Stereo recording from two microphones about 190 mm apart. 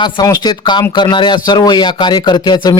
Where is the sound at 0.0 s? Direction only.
20° left (ahead or behind).